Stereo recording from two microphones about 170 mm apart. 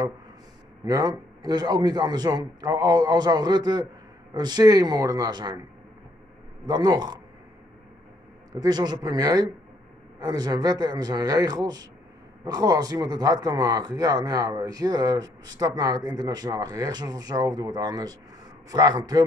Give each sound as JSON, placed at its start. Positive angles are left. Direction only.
{"t": 0.8, "sound": "speech", "side_deg": -20}
{"t": 6.6, "sound": "speech", "side_deg": -25}
{"t": 8.5, "sound": "speech", "side_deg": -25}